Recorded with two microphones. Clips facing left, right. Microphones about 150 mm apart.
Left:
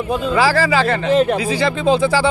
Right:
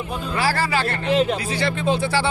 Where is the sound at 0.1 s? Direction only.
90° left.